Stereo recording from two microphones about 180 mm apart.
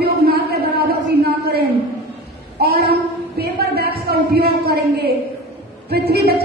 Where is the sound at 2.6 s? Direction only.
60° right (ahead or behind).